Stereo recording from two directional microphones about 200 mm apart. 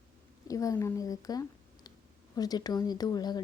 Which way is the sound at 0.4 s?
15° left (ahead or behind).